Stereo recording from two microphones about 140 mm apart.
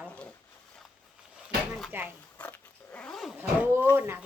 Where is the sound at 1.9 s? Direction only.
15° right (ahead or behind).